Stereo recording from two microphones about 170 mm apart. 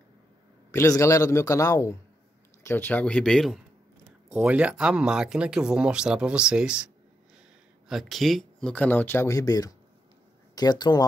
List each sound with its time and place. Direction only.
0.7 s speech: 15° left (ahead or behind); by 6.9 s 5° right (ahead or behind)
7.9 s speech: centre (ahead or behind); by 11.1 s 25° left (ahead or behind)